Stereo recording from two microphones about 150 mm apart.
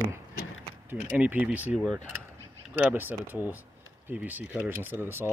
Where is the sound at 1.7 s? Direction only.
Centre (ahead or behind).